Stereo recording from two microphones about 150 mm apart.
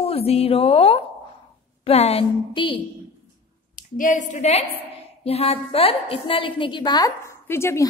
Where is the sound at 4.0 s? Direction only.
55° left (ahead or behind).